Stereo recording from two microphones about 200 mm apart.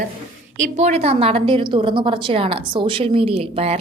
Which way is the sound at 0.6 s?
35° right (ahead or behind).